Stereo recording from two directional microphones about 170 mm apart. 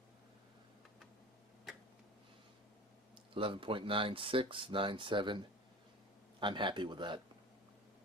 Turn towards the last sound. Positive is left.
turn(degrees=-30)  # may be behind; listen again after turning